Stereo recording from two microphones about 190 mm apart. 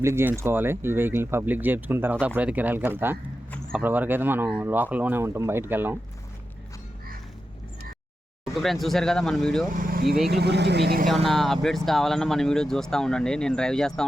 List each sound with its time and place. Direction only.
0.0 s speech: 15° right (ahead or behind)
8.6 s speech: centre (ahead or behind)
9.7 s speech: 50° right (ahead or behind)
11.1 s speech: centre (ahead or behind)